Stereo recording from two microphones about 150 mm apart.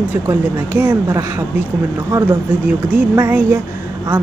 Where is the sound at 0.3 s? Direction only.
15° right (ahead or behind).